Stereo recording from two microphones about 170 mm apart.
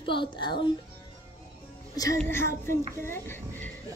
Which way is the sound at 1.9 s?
20° left (ahead or behind).